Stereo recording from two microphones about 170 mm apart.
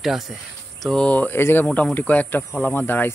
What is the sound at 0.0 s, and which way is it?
Speech, centre (ahead or behind).